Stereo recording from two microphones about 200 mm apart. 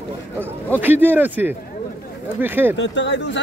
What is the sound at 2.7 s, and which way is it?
Speech, 65° left (ahead or behind).